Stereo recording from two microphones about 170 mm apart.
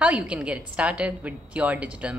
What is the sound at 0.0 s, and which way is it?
A woman's voice, 5° right (ahead or behind).